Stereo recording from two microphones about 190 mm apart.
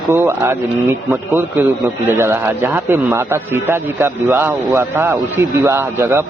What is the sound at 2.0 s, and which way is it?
A man's voice, 15° right (ahead or behind).